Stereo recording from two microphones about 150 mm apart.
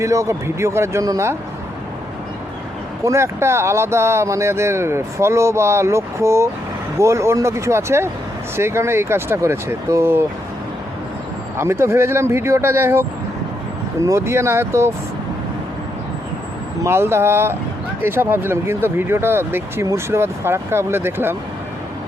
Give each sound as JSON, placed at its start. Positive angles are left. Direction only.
{"t": 0.0, "sound": "speech", "side_deg": -20}
{"t": 3.0, "sound": "speech", "side_deg": -20}
{"t": 11.5, "sound": "speech", "side_deg": -15}
{"t": 16.8, "sound": "speech", "side_deg": -15}